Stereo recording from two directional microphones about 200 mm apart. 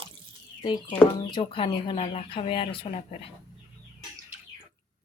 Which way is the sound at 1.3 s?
25° left (ahead or behind).